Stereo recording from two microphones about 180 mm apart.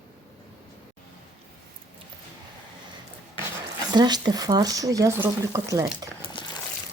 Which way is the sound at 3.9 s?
25° right (ahead or behind).